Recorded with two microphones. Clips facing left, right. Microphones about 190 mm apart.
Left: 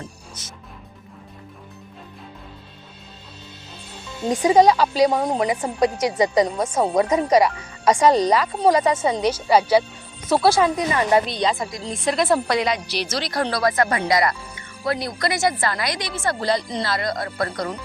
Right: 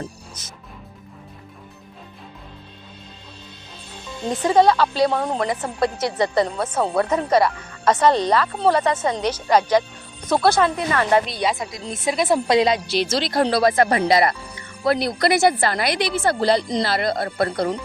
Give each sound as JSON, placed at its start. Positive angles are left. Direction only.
{"t": 4.3, "sound": "a woman's voice", "side_deg": 10}
{"t": 11.3, "sound": "a woman's voice", "side_deg": -5}
{"t": 12.5, "sound": "a woman's voice", "side_deg": -25}
{"t": 14.1, "sound": "music", "side_deg": -30}
{"t": 15.2, "sound": "a woman's voice", "side_deg": -35}